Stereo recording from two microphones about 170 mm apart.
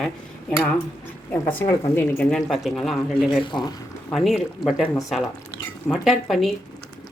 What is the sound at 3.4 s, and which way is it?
Speech, 25° left (ahead or behind).